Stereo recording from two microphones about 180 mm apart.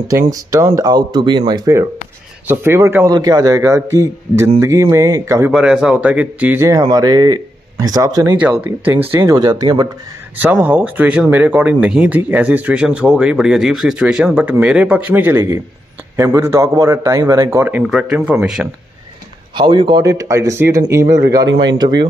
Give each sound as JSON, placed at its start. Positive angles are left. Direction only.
{"t": 0.3, "sound": "speech", "side_deg": -15}
{"t": 5.5, "sound": "speech", "side_deg": -5}
{"t": 8.4, "sound": "speech", "side_deg": -5}
{"t": 10.3, "sound": "speech", "side_deg": -10}
{"t": 19.5, "sound": "speech", "side_deg": -25}